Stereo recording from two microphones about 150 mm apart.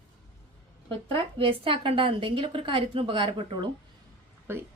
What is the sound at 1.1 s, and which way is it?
A woman's voice, 40° right (ahead or behind).